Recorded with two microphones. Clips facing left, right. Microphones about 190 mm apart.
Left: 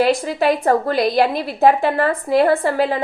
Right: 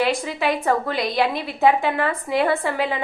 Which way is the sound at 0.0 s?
40° left (ahead or behind).